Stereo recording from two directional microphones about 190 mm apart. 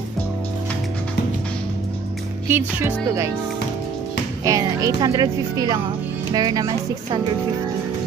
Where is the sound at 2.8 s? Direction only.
15° right (ahead or behind).